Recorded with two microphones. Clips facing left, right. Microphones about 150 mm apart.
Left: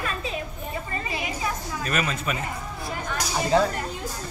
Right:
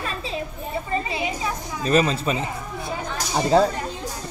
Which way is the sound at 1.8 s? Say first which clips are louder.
Right 9 dB; 30° right (ahead or behind).